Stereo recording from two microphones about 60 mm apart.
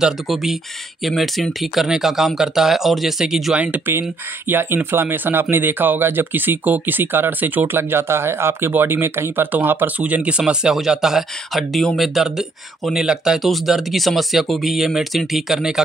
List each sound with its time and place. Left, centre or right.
0.0 s speech: centre
3.5 s speech: right
4.5 s speech: right
9.9 s speech: right
10.4 s speech: centre